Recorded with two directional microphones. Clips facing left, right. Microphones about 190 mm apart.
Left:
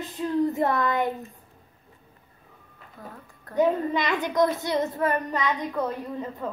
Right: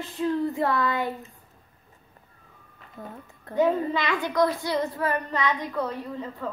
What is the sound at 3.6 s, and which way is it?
A child's voice, 20° left (ahead or behind).